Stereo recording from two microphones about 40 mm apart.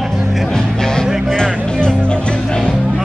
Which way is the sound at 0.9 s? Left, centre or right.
Centre.